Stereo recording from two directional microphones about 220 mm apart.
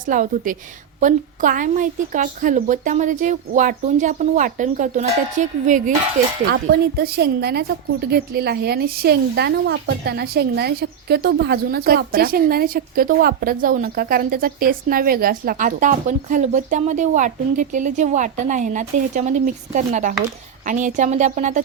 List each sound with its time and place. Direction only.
0.0 s speech: 35° right (ahead or behind)
7.0 s a woman's voice: 45° right (ahead or behind)